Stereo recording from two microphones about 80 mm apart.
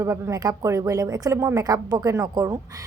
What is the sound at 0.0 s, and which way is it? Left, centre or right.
Speech, right.